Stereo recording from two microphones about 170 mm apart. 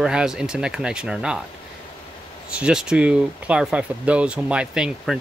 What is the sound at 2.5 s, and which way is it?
Speech, 5° right (ahead or behind).